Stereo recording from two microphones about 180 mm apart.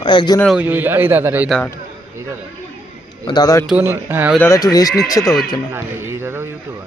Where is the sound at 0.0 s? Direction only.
25° left (ahead or behind).